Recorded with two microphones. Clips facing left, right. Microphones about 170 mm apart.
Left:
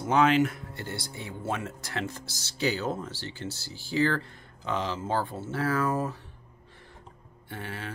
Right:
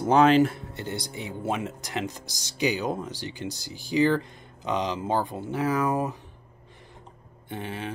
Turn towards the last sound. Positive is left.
turn(degrees=-20)  # may be behind; listen again after turning